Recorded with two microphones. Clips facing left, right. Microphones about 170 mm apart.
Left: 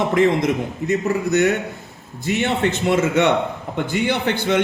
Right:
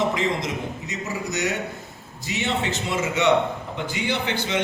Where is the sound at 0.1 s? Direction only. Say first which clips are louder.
Left 8 dB; 55° left (ahead or behind).